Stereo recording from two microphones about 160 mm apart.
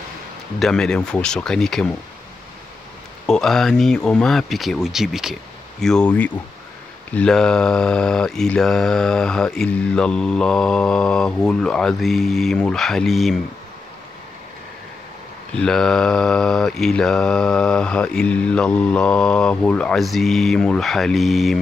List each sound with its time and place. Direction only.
0.6 s speech: 5° left (ahead or behind)
3.3 s speech: 5° left (ahead or behind)
15.5 s speech: 5° left (ahead or behind)